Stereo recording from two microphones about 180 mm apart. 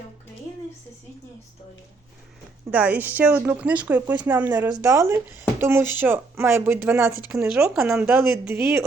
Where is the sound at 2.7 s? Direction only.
10° right (ahead or behind).